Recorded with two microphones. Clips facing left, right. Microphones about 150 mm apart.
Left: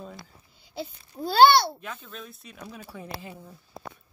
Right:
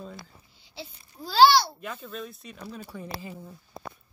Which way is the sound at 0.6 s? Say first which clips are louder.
Left 7 dB; 50° left (ahead or behind).